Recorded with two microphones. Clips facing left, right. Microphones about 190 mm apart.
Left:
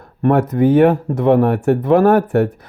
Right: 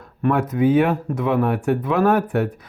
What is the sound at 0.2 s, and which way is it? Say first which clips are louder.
Speech: left 5 dB; 55° left (ahead or behind).